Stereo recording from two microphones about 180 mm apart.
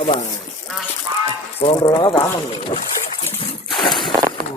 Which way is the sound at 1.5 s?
30° left (ahead or behind).